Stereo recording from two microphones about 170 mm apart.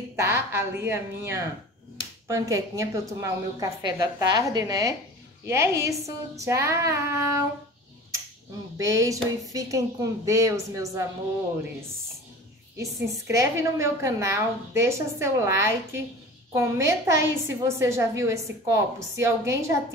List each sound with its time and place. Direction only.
0.1 s a woman's voice: 15° right (ahead or behind)
8.7 s a woman's voice: 20° right (ahead or behind)
12.7 s a woman's voice: 15° right (ahead or behind)